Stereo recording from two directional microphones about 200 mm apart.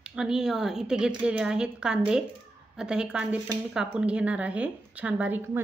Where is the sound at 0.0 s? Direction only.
5° right (ahead or behind).